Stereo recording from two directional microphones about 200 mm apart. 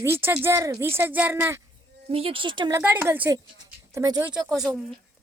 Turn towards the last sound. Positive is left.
turn(degrees=-5)  # may be behind; listen again after turning